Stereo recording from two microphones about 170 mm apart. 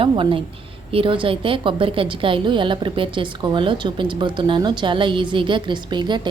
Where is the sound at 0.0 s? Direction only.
30° right (ahead or behind).